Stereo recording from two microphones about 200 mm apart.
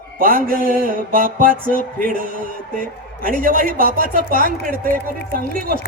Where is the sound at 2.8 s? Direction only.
45° right (ahead or behind).